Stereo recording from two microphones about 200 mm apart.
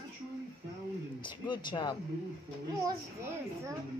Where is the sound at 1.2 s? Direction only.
25° left (ahead or behind).